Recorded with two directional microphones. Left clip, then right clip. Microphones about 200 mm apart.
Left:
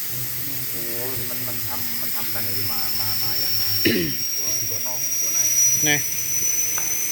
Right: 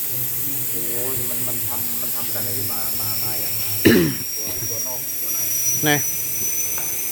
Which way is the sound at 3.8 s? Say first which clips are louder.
Right 7 dB; 35° right (ahead or behind).